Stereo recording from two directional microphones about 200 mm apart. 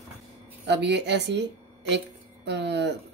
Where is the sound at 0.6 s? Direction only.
60° right (ahead or behind).